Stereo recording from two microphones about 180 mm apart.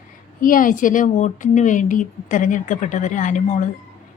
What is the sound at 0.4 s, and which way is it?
Speech, 50° left (ahead or behind).